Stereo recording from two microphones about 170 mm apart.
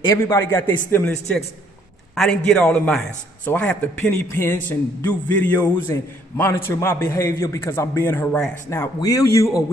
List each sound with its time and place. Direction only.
0.2 s a man's voice: 15° left (ahead or behind)